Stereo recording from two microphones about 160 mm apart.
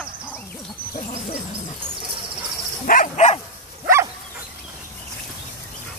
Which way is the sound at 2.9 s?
55° left (ahead or behind).